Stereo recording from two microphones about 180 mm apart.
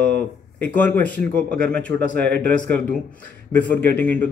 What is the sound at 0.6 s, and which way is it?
Speech, 10° left (ahead or behind).